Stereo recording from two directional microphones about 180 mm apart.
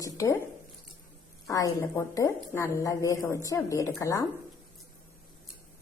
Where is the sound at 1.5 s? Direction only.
20° left (ahead or behind).